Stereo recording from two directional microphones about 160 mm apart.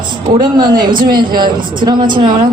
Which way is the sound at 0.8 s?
60° right (ahead or behind).